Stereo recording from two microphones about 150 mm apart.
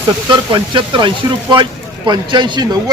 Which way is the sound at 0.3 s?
35° right (ahead or behind).